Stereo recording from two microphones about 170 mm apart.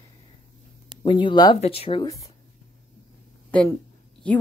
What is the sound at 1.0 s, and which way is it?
Speech, 30° left (ahead or behind).